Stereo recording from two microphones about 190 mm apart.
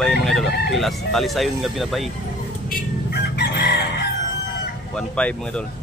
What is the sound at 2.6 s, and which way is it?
Chicken, 60° left (ahead or behind).